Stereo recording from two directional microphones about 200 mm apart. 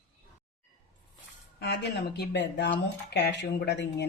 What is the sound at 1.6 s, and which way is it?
Speech, 55° left (ahead or behind).